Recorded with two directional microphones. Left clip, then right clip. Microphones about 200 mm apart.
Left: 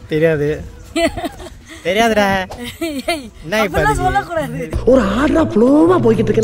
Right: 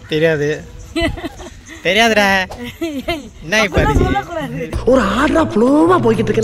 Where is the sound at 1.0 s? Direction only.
25° left (ahead or behind).